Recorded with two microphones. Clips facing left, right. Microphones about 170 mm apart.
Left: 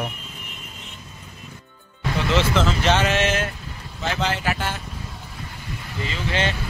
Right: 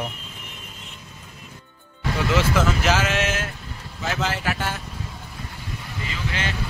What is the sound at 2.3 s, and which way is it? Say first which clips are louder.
Speech: left 1 dB; 5° right (ahead or behind).